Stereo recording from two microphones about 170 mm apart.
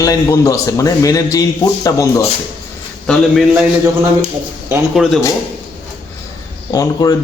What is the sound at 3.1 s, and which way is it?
Speech, centre (ahead or behind).